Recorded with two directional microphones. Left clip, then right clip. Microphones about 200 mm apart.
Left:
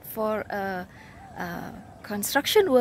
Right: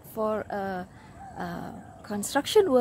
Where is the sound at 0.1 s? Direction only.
Centre (ahead or behind).